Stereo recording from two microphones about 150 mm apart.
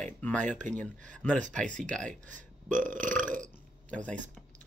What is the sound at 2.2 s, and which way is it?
Burping, 60° right (ahead or behind).